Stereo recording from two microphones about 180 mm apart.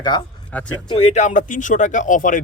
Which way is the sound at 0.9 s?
35° left (ahead or behind).